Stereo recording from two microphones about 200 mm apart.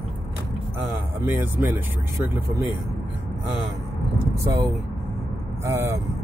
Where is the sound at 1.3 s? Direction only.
10° right (ahead or behind).